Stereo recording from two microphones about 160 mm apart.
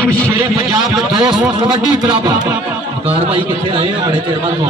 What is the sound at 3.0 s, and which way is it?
Speech, 35° right (ahead or behind).